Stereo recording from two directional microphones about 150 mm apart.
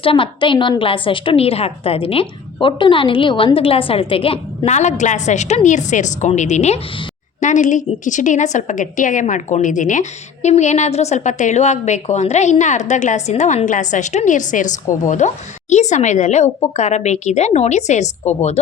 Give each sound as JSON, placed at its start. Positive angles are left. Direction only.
{"t": 0.0, "sound": "a woman's voice", "side_deg": 35}